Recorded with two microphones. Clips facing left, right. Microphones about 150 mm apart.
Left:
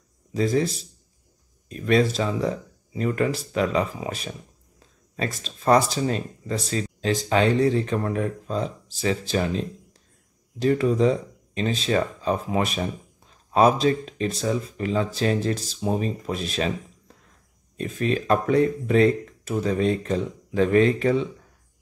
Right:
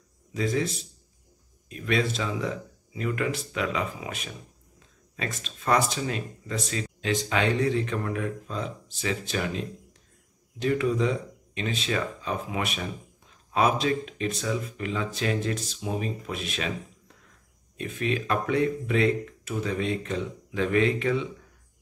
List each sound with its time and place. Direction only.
0.3 s speech: 35° left (ahead or behind)
17.7 s speech: 35° left (ahead or behind)